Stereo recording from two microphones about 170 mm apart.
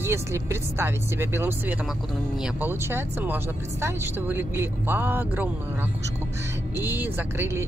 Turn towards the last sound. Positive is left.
turn(degrees=-15)  # may be behind; listen again after turning